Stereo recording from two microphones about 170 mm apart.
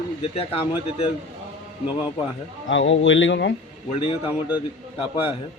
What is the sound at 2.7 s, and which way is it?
Speech, 90° left.